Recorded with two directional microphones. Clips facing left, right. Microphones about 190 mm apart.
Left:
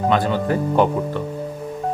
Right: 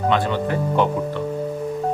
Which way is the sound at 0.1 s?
40° left (ahead or behind).